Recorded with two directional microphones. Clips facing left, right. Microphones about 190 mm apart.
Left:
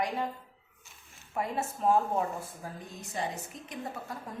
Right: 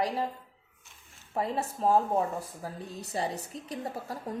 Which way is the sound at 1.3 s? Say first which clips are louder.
Right 2 dB; 30° right (ahead or behind).